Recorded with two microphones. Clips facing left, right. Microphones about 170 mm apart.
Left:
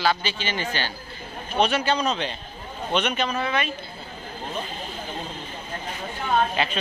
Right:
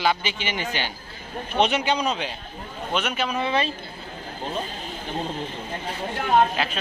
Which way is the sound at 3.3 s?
25° right (ahead or behind).